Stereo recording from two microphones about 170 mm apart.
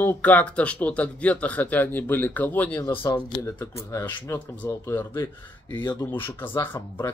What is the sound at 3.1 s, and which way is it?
Speech, 20° left (ahead or behind).